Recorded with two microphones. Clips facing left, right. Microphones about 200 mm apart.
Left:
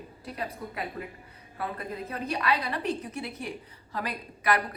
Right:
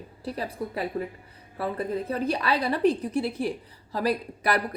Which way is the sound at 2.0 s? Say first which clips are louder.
Even; 35° right (ahead or behind).